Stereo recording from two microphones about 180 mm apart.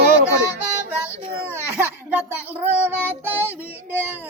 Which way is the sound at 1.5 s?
10° right (ahead or behind).